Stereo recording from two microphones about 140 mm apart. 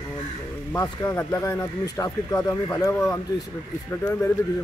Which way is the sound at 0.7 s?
25° left (ahead or behind).